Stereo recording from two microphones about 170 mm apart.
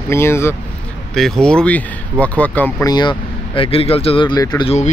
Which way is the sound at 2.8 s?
25° left (ahead or behind).